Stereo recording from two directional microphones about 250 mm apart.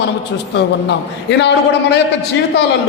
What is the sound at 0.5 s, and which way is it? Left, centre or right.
A man's voice, left.